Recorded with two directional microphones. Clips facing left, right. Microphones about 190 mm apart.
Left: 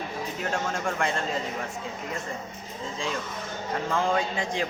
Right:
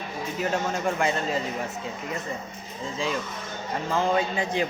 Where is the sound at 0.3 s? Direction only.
5° right (ahead or behind).